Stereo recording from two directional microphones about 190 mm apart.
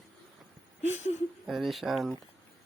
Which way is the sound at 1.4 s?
Centre (ahead or behind).